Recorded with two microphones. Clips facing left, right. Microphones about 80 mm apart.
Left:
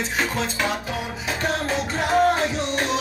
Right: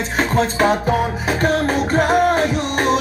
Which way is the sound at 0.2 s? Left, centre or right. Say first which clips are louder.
Right 9 dB; right.